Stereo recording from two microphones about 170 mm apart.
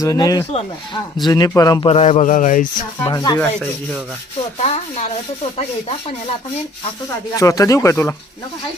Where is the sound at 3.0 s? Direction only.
25° left (ahead or behind).